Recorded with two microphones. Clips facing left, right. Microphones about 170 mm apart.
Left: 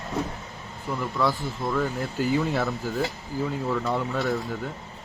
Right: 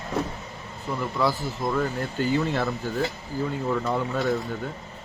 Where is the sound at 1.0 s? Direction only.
5° right (ahead or behind).